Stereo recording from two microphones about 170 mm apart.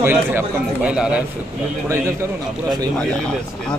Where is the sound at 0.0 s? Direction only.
10° right (ahead or behind).